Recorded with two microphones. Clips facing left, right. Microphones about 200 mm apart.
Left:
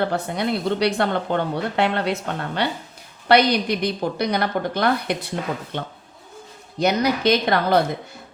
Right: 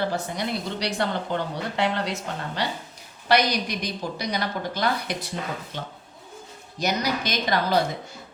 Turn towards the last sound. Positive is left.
turn(degrees=60)  # may be behind; listen again after turning